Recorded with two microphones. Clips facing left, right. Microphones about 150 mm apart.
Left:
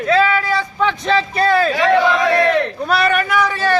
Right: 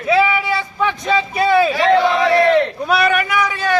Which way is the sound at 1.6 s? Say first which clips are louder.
Even; 25° right (ahead or behind).